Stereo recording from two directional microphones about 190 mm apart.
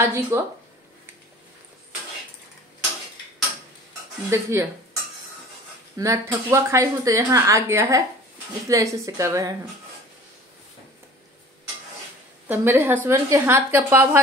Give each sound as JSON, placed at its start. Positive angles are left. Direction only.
{"t": 0.0, "sound": "a woman's voice", "side_deg": -15}
{"t": 4.3, "sound": "a woman's voice", "side_deg": -15}
{"t": 5.9, "sound": "a woman's voice", "side_deg": -15}
{"t": 12.4, "sound": "a woman's voice", "side_deg": -10}